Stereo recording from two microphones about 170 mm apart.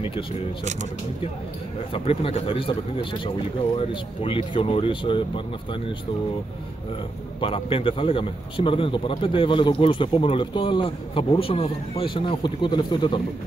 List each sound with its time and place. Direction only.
1.9 s a man's voice: 35° left (ahead or behind)
7.3 s a man's voice: 30° left (ahead or behind)